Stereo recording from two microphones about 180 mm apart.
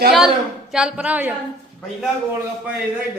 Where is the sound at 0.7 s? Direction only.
5° right (ahead or behind).